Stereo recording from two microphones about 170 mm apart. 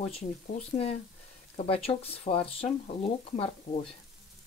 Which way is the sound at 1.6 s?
35° left (ahead or behind).